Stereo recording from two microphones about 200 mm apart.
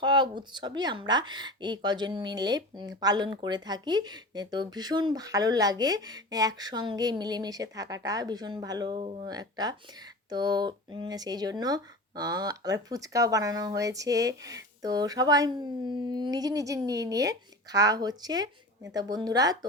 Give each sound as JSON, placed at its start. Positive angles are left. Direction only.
{"t": 0.0, "sound": "speech", "side_deg": -20}
{"t": 9.0, "sound": "speech", "side_deg": -30}
{"t": 9.2, "sound": "speech", "side_deg": -20}